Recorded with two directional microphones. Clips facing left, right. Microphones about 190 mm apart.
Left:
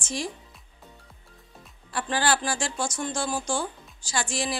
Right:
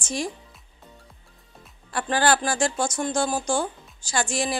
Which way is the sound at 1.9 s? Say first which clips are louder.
Right 4 dB; 50° right (ahead or behind).